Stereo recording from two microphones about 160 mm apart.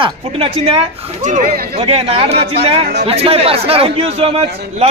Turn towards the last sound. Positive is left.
turn(degrees=-40)  # may be behind; listen again after turning